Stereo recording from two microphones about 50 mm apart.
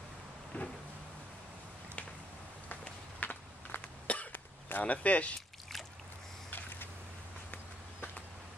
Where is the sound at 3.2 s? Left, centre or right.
Left.